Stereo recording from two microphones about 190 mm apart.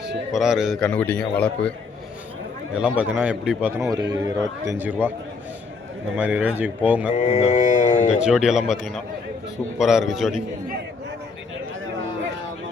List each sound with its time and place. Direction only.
0.3 s a man's voice: centre (ahead or behind)
2.7 s a man's voice: 5° right (ahead or behind)
3.9 s a man's voice: 20° right (ahead or behind)
6.1 s a man's voice: 10° right (ahead or behind)
7.2 s speech: 35° left (ahead or behind)
8.2 s a man's voice: 5° right (ahead or behind)